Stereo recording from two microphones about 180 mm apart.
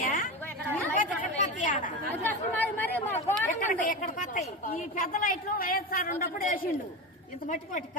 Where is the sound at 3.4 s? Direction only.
45° left (ahead or behind).